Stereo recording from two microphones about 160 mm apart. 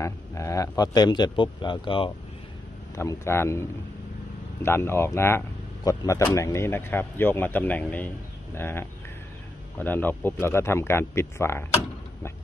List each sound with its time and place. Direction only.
0.0 s a man's voice: 20° left (ahead or behind)
3.0 s a man's voice: 15° left (ahead or behind)
4.6 s a man's voice: 15° left (ahead or behind)